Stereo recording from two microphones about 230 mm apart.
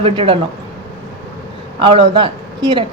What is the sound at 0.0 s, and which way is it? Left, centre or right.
Speech, right.